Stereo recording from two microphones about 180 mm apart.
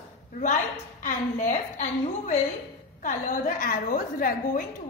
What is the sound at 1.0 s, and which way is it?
A woman's voice, 45° left (ahead or behind).